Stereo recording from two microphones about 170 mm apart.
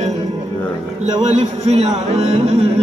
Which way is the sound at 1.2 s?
40° right (ahead or behind).